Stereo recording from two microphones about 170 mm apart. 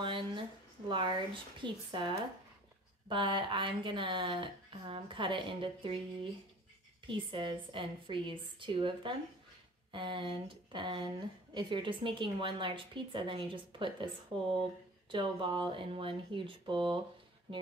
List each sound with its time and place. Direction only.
0.0 s a woman's voice: 30° right (ahead or behind)
7.1 s a woman's voice: 30° right (ahead or behind)